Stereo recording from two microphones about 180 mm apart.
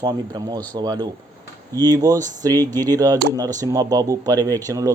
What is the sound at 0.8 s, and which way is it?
Speech, 20° right (ahead or behind).